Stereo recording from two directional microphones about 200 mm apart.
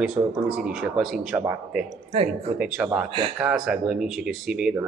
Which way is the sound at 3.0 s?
25° right (ahead or behind).